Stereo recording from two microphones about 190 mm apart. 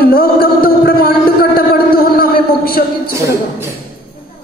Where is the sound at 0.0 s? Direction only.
50° left (ahead or behind).